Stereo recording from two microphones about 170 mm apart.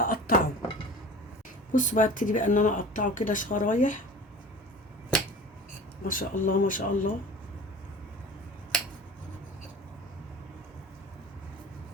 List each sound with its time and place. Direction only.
0.0 s a sound: 55° left (ahead or behind)
1.7 s speech: 50° left (ahead or behind)
6.1 s speech: 50° left (ahead or behind)